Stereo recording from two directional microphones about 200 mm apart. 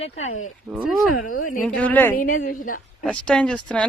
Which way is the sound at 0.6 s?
5° right (ahead or behind).